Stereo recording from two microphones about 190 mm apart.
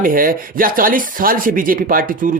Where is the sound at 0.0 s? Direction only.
50° right (ahead or behind).